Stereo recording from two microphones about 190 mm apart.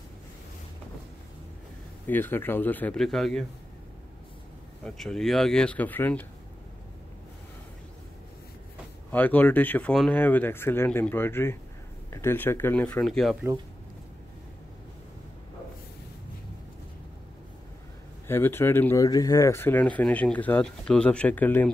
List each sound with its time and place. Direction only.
2.0 s speech: 10° left (ahead or behind)
4.8 s speech: 5° left (ahead or behind)
9.1 s speech: 10° left (ahead or behind)
18.2 s speech: 10° left (ahead or behind)